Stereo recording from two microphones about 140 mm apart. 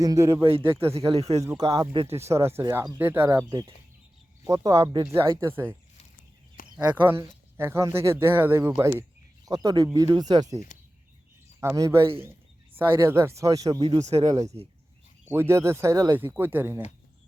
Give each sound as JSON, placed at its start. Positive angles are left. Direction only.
{"t": 0.0, "sound": "speech", "side_deg": -25}
{"t": 1.1, "sound": "speech", "side_deg": -50}
{"t": 1.4, "sound": "speech", "side_deg": -25}
{"t": 6.7, "sound": "speech", "side_deg": -10}
{"t": 11.6, "sound": "speech", "side_deg": -20}
{"t": 14.0, "sound": "speech", "side_deg": -50}
{"t": 14.3, "sound": "speech", "side_deg": -25}